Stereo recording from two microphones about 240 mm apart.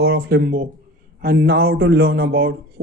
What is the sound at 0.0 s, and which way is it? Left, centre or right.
Speech, right.